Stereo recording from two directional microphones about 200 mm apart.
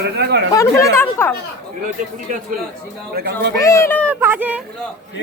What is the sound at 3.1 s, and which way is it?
Speech, 55° right (ahead or behind).